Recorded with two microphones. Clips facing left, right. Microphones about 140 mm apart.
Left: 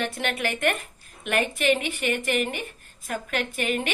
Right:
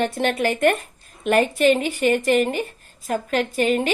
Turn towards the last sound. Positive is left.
turn(degrees=-35)  # may be behind; listen again after turning